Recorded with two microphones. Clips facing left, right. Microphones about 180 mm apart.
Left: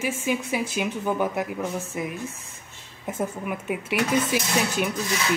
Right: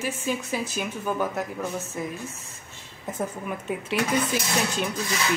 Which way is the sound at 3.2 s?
10° left (ahead or behind).